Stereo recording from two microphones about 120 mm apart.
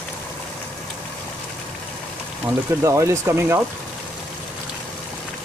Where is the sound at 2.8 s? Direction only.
25° right (ahead or behind).